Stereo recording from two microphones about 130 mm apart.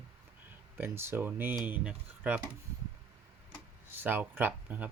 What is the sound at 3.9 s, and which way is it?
Speech, 15° right (ahead or behind).